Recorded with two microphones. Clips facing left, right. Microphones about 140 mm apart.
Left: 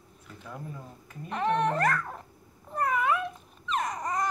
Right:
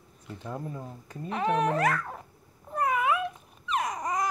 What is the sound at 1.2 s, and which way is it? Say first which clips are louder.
Dog: even; 5° right (ahead or behind).